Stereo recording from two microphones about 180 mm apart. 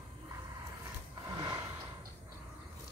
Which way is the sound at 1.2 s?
20° right (ahead or behind).